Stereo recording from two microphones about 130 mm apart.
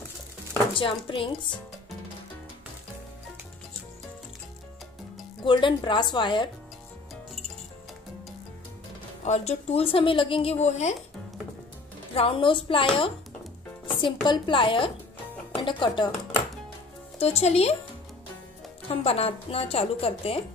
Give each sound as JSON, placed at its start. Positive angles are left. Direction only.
{"t": 0.7, "sound": "speech", "side_deg": 40}
{"t": 5.4, "sound": "speech", "side_deg": 40}
{"t": 9.2, "sound": "a woman's voice", "side_deg": 60}
{"t": 12.1, "sound": "a woman's voice", "side_deg": 45}
{"t": 17.2, "sound": "speech", "side_deg": 55}
{"t": 19.0, "sound": "a woman's voice", "side_deg": 50}